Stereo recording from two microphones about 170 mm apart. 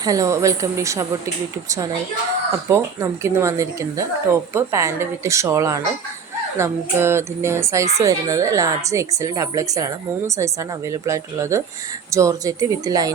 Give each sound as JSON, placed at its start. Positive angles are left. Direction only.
{"t": 0.0, "sound": "speech", "side_deg": -20}
{"t": 2.6, "sound": "speech", "side_deg": -15}